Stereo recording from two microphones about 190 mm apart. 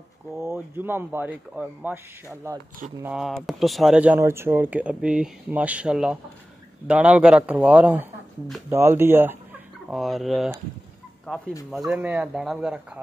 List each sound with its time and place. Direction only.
0.4 s speech: 10° right (ahead or behind)
3.0 s speech: 5° right (ahead or behind)
9.8 s speech: centre (ahead or behind)